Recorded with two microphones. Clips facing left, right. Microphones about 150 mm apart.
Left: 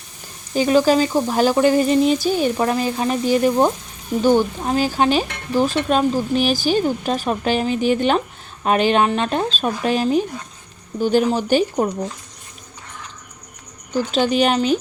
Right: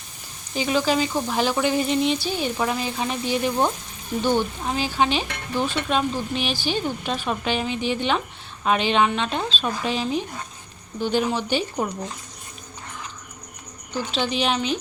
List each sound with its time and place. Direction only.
0.5 s speech: 45° left (ahead or behind)
14.1 s speech: 45° left (ahead or behind)